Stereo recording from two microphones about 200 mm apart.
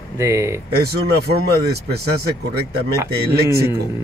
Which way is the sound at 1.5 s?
55° right (ahead or behind).